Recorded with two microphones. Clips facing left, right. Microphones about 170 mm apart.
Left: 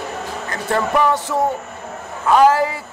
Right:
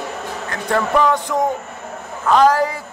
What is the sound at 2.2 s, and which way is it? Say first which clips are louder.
Speech: left 1 dB; 10° left (ahead or behind).